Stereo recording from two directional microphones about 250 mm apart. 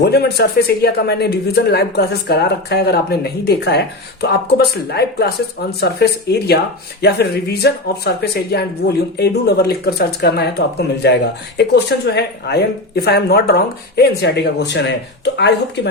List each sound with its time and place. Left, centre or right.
0.0 s speech: left